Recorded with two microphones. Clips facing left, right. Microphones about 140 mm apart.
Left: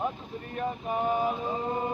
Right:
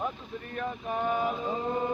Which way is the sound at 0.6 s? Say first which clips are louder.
Left 2 dB; 30° left (ahead or behind).